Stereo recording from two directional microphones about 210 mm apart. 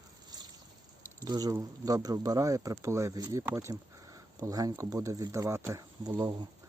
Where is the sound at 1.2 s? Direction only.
15° right (ahead or behind).